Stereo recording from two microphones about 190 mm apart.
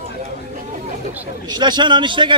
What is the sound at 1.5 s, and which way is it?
Speech, 25° right (ahead or behind).